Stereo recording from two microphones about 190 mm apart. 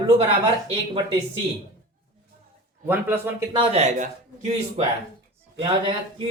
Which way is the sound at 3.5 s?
35° right (ahead or behind).